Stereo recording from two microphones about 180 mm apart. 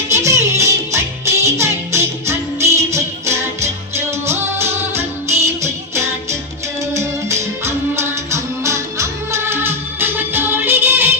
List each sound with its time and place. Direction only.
0.1 s music: 15° right (ahead or behind)